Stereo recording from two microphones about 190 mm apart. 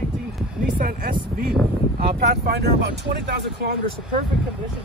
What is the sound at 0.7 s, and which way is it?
Speech, 50° right (ahead or behind).